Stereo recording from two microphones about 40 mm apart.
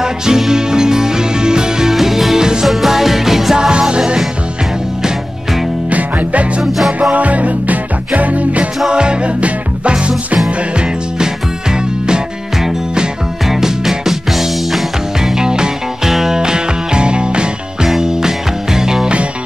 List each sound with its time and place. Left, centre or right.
0.0 s music: centre
3.5 s music: right
5.9 s music: right
8.9 s music: right
13.5 s music: centre
15.2 s music: centre
17.8 s music: centre